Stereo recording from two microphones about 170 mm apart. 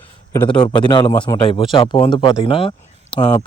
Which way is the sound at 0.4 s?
30° left (ahead or behind).